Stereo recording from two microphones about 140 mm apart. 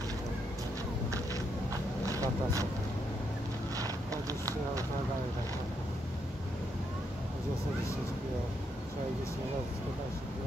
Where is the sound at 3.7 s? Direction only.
25° right (ahead or behind).